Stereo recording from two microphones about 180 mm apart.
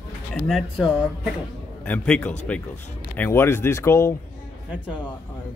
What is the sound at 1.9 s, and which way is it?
Speech, 5° left (ahead or behind).